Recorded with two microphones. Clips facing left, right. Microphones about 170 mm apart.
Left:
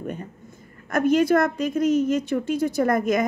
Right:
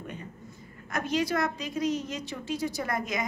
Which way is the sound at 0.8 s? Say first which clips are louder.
Left 10 dB; 50° left (ahead or behind).